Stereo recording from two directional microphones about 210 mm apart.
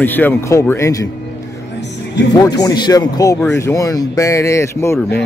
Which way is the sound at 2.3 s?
20° left (ahead or behind).